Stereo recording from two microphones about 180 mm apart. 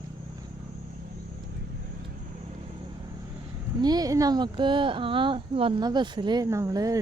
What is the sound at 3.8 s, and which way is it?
Speech, 20° right (ahead or behind).